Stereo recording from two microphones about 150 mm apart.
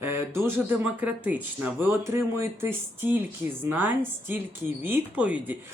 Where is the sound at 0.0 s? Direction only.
15° right (ahead or behind).